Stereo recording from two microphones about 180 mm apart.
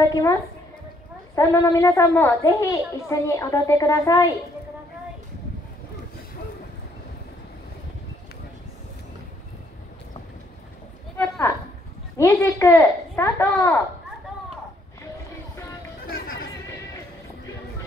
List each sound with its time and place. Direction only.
0.0 s a woman's voice: 20° left (ahead or behind)
11.1 s a woman's voice: 15° left (ahead or behind)